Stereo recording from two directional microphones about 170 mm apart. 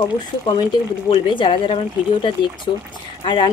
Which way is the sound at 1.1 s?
30° left (ahead or behind).